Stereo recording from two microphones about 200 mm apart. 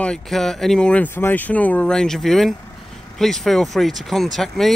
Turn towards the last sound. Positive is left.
turn(degrees=0)  # may be behind; listen again after turning